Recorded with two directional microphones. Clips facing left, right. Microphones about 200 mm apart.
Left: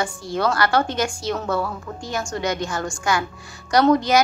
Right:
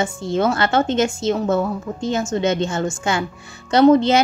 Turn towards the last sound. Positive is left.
turn(degrees=-25)  # may be behind; listen again after turning